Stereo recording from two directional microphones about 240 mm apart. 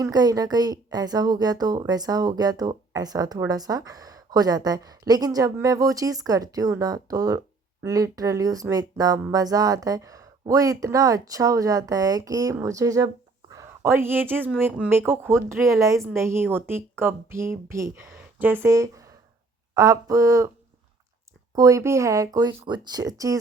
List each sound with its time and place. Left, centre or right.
0.0 s a woman's voice: centre
21.5 s speech: centre